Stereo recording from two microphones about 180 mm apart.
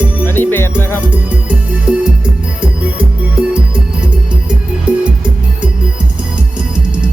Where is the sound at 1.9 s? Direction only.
5° right (ahead or behind).